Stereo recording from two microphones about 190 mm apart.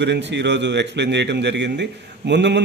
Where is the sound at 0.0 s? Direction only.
65° right (ahead or behind).